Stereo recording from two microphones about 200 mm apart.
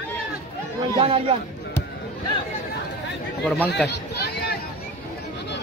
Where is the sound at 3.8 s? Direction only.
55° left (ahead or behind).